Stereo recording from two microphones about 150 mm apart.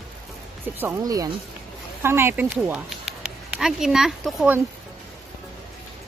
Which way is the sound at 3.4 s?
5° right (ahead or behind).